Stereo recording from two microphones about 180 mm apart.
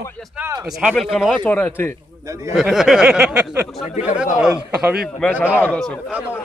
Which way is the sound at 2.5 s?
Centre (ahead or behind).